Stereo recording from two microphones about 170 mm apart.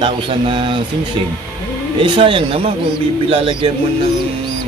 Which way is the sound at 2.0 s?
30° right (ahead or behind).